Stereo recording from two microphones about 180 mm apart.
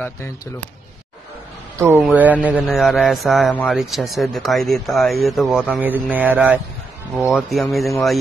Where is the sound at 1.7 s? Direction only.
15° right (ahead or behind).